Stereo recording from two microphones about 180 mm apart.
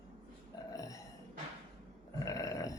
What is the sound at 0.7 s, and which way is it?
Burping, 20° left (ahead or behind).